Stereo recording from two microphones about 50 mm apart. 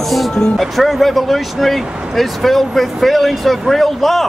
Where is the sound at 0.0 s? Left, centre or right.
Centre.